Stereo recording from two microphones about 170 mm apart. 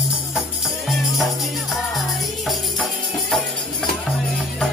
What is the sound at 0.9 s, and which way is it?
Music, centre (ahead or behind).